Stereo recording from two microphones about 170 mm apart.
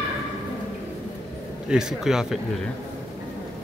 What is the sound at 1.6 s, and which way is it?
Speech, 5° right (ahead or behind).